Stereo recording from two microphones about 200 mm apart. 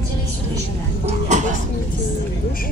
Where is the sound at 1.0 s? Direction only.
35° right (ahead or behind).